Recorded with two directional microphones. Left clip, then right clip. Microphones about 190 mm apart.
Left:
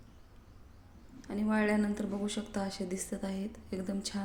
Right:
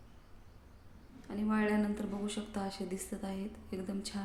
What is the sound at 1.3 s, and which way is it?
A woman's voice, 25° left (ahead or behind).